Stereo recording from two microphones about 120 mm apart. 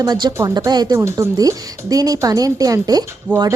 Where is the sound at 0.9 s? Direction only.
25° right (ahead or behind).